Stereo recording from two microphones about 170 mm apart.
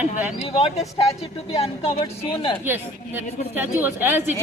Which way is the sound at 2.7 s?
10° right (ahead or behind).